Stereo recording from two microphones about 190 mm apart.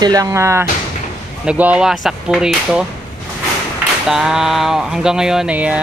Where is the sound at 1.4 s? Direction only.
5° right (ahead or behind).